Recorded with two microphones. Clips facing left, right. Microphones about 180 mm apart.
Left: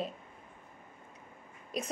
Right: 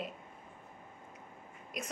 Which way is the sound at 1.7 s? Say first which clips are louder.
Left 5 dB; 30° left (ahead or behind).